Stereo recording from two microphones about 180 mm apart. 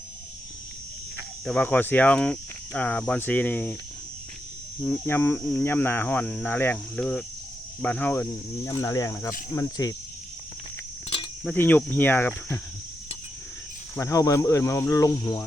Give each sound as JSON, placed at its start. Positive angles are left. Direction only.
{"t": 1.5, "sound": "speech", "side_deg": 5}
{"t": 5.0, "sound": "insect", "side_deg": 10}
{"t": 5.6, "sound": "speech", "side_deg": 10}
{"t": 9.5, "sound": "cricket", "side_deg": 20}
{"t": 11.4, "sound": "speech", "side_deg": 10}
{"t": 13.9, "sound": "speech", "side_deg": 15}